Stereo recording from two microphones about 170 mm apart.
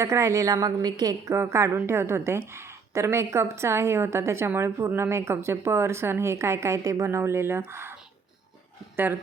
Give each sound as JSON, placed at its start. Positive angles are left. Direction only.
{"t": 0.0, "sound": "a woman's voice", "side_deg": -15}